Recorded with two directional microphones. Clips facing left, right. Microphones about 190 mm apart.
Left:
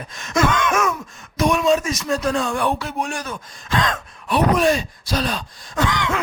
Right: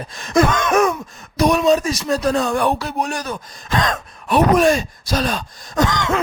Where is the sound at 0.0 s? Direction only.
35° right (ahead or behind).